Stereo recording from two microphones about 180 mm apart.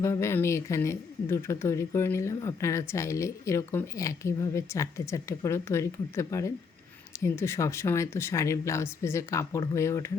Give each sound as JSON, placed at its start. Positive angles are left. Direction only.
{"t": 0.0, "sound": "speech", "side_deg": 15}